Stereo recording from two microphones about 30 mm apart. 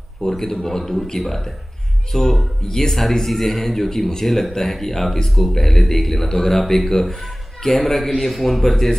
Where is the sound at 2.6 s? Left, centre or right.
Left.